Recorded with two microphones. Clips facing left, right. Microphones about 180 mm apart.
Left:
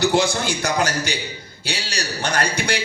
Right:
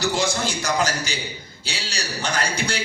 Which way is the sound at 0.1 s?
60° left (ahead or behind).